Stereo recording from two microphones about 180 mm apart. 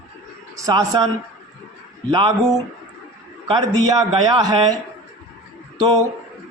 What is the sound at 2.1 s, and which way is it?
A man's voice, 25° right (ahead or behind).